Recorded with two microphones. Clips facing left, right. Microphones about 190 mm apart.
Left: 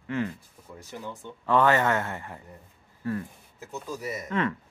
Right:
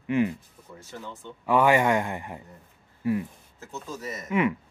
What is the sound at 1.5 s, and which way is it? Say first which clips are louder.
Speech: right 2 dB; 10° right (ahead or behind).